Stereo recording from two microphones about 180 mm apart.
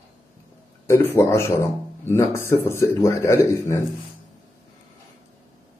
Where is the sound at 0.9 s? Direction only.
15° left (ahead or behind).